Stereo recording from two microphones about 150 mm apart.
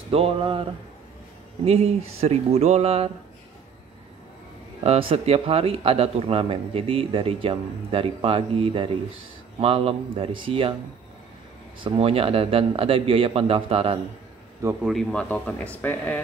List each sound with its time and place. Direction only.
0.1 s speech: 40° right (ahead or behind)
4.8 s speech: 40° right (ahead or behind)
11.8 s speech: 40° right (ahead or behind)
14.8 s speech: centre (ahead or behind)